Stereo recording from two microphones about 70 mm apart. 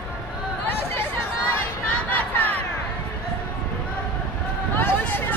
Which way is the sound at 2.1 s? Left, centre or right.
Left.